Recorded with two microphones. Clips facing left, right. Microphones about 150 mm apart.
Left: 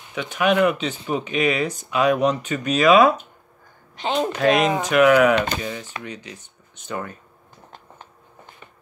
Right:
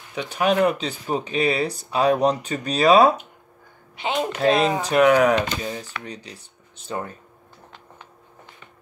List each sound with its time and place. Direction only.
0.1 s speech: 35° right (ahead or behind)
3.9 s speech: 5° right (ahead or behind)
4.4 s speech: 30° right (ahead or behind)